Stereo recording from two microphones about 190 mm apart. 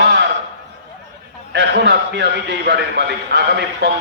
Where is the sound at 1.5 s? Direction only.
65° right (ahead or behind).